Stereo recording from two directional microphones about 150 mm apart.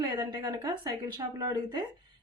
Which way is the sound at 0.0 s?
20° right (ahead or behind).